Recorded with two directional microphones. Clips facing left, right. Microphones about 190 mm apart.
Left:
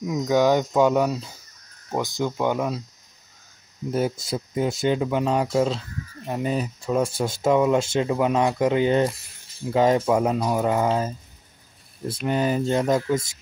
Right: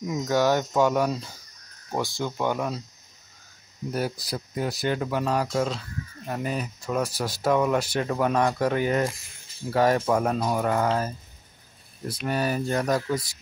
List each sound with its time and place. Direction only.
0.0 s speech: centre (ahead or behind)
0.3 s speech: 15° left (ahead or behind)
3.9 s speech: 25° left (ahead or behind)
6.5 s speech: 30° left (ahead or behind)
12.3 s speech: 20° left (ahead or behind)